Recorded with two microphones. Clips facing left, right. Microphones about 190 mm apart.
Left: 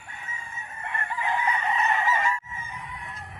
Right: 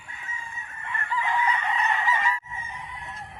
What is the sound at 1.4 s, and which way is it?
Chicken, 25° left (ahead or behind).